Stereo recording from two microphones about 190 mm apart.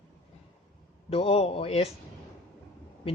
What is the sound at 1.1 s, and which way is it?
Speech, 30° left (ahead or behind).